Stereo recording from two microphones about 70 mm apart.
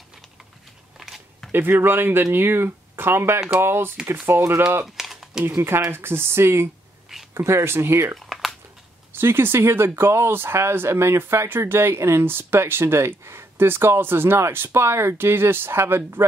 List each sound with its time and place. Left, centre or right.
0.9 s a sound: centre
1.5 s speech: right
4.9 s typing: centre
5.6 s speech: right
8.3 s a sound: centre
9.1 s speech: right